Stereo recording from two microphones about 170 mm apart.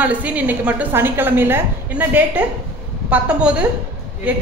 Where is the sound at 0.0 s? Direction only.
10° right (ahead or behind).